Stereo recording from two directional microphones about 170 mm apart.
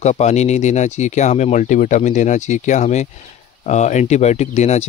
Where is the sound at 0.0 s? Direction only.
40° left (ahead or behind).